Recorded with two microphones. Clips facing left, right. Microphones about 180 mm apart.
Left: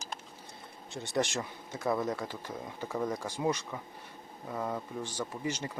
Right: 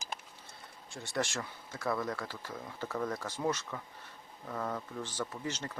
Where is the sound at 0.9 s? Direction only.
20° left (ahead or behind).